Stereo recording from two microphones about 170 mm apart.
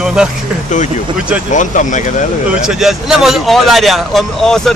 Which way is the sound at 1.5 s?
45° left (ahead or behind).